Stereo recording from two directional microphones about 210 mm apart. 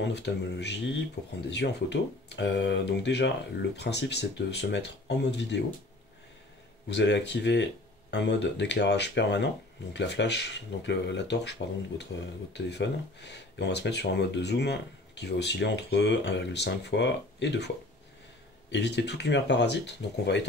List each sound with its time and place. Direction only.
0.0 s speech: 55° left (ahead or behind)
6.9 s speech: 55° left (ahead or behind)
18.7 s speech: 55° left (ahead or behind)